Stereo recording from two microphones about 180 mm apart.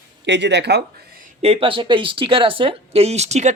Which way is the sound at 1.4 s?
30° right (ahead or behind).